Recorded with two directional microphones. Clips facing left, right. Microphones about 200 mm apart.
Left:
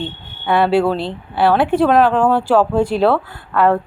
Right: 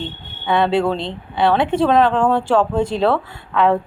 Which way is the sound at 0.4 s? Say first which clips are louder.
Left 2 dB; 5° left (ahead or behind).